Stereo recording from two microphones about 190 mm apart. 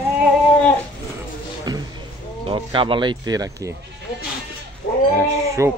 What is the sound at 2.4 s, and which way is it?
Speech, 25° right (ahead or behind).